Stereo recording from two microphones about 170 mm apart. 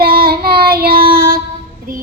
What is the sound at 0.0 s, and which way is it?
Child singing, 60° right (ahead or behind).